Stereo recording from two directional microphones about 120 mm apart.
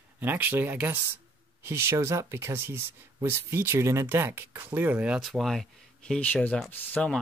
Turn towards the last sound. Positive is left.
turn(degrees=5)  # may be behind; listen again after turning